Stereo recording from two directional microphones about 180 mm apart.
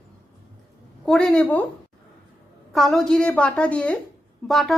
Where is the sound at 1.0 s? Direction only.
5° left (ahead or behind).